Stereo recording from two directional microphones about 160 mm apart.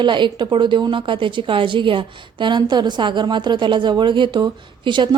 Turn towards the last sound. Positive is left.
turn(degrees=-30)  # may be behind; listen again after turning